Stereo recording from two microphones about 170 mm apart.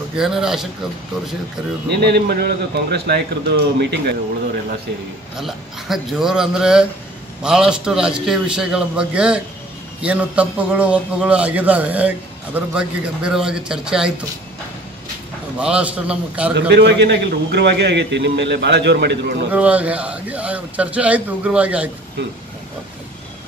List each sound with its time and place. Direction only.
0.1 s a man's voice: 5° right (ahead or behind)
1.9 s a man's voice: 75° right (ahead or behind)
5.4 s a man's voice: centre (ahead or behind)
15.6 s a man's voice: 5° right (ahead or behind)
16.5 s a man's voice: 85° right
19.5 s a man's voice: 10° right (ahead or behind)